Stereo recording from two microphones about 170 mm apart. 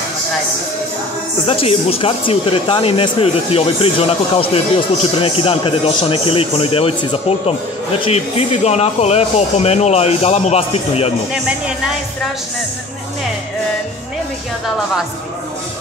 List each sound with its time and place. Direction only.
1.5 s speech: 35° left (ahead or behind)